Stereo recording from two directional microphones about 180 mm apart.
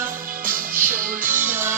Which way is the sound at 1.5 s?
10° right (ahead or behind).